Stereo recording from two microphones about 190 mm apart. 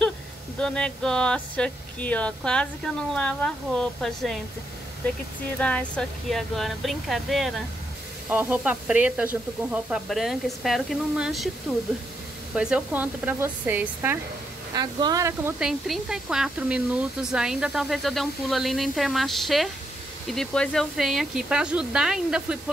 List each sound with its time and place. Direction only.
0.6 s speech: 5° left (ahead or behind)
5.6 s speech: 5° left (ahead or behind)
12.5 s speech: 5° right (ahead or behind)
15.6 s speech: 5° right (ahead or behind)